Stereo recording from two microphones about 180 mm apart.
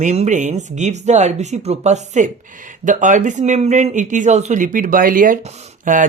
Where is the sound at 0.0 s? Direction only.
40° right (ahead or behind).